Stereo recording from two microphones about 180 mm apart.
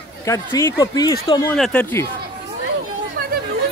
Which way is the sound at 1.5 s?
5° left (ahead or behind).